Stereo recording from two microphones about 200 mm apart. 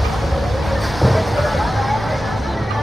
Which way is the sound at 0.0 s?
Centre (ahead or behind).